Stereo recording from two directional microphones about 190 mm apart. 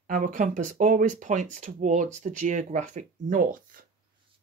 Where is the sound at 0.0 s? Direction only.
45° right (ahead or behind).